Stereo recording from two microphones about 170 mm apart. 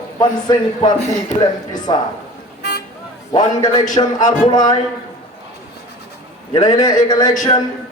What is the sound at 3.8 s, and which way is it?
Speech, 50° left (ahead or behind).